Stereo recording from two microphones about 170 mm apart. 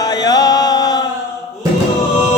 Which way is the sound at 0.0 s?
25° left (ahead or behind).